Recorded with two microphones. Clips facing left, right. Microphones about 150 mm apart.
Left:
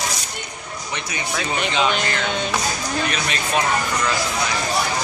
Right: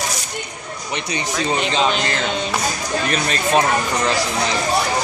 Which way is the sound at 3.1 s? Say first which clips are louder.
Right 5 dB; 35° right (ahead or behind).